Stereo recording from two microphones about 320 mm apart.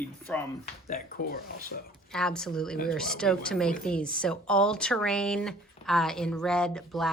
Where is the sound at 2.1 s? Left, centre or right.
Centre.